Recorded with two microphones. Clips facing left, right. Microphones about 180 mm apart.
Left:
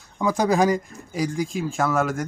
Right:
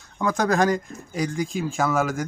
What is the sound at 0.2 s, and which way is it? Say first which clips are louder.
Speech: left 1 dB; 10° left (ahead or behind).